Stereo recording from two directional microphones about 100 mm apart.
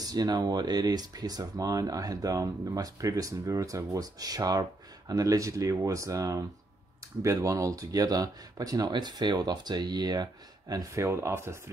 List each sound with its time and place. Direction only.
0.0 s speech: 40° right (ahead or behind)
11.0 s speech: 25° right (ahead or behind)